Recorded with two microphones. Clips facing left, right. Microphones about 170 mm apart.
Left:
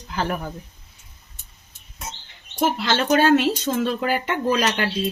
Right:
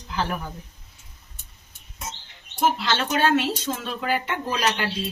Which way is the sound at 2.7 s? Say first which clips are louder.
Left 5 dB; 55° left (ahead or behind).